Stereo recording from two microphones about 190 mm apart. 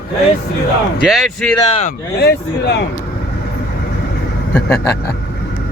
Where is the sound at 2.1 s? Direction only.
60° left (ahead or behind).